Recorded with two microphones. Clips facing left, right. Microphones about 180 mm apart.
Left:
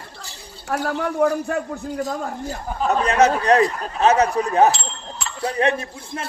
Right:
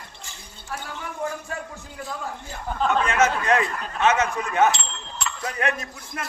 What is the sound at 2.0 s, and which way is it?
A man's voice, 40° left (ahead or behind).